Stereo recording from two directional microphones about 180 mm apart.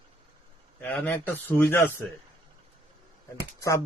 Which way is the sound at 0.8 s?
10° left (ahead or behind).